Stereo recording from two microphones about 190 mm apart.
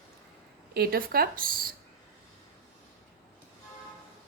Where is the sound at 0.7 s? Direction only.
55° right (ahead or behind).